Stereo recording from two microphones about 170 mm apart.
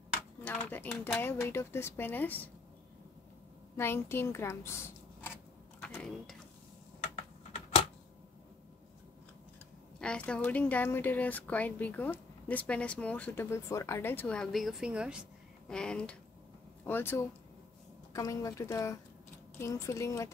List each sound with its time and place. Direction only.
0.4 s speech: 10° left (ahead or behind)
3.7 s a sound: 15° left (ahead or behind)
9.9 s speech: 5° left (ahead or behind)
15.7 s speech: 5° left (ahead or behind)